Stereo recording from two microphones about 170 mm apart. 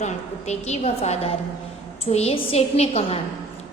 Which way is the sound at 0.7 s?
40° left (ahead or behind).